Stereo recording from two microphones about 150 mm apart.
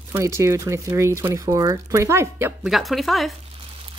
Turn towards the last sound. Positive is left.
turn(degrees=0)  # may be behind; listen again after turning